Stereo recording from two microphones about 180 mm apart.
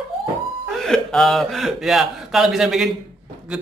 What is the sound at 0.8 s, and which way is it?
Speech, centre (ahead or behind).